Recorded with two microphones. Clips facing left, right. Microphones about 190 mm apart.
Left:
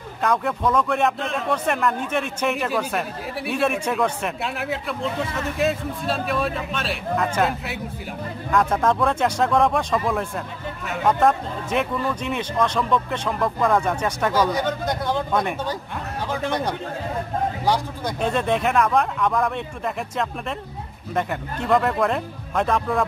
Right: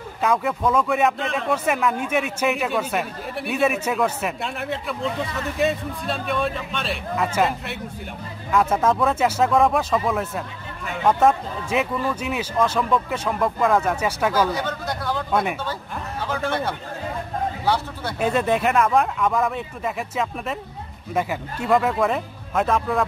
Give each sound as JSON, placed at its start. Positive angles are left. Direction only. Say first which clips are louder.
{"t": 0.2, "sound": "speech", "louder": "right 1 dB", "side_deg": -5}
{"t": 14.5, "sound": "speech", "louder": "left 3 dB", "side_deg": 20}
{"t": 16.3, "sound": "a man's voice", "louder": "even", "side_deg": 15}
{"t": 18.2, "sound": "speech", "louder": "right 2 dB", "side_deg": -5}